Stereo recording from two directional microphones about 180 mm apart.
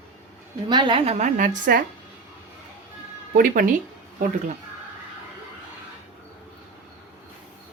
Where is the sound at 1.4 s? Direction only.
50° right (ahead or behind).